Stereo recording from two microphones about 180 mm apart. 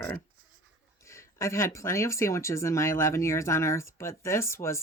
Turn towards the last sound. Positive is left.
turn(degrees=15)  # may be behind; listen again after turning